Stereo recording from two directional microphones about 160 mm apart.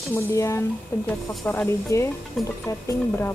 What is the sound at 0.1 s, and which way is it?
Speech, 15° left (ahead or behind).